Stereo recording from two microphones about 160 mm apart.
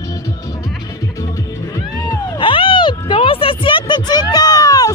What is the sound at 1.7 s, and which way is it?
Music, 20° left (ahead or behind).